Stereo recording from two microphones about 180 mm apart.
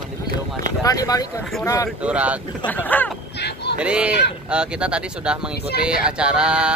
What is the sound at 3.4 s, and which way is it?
Speech, 70° left (ahead or behind).